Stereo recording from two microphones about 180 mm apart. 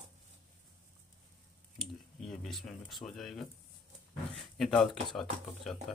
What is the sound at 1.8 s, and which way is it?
Speech, centre (ahead or behind).